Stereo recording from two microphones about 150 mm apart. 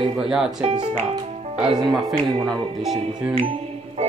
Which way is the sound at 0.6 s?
30° right (ahead or behind).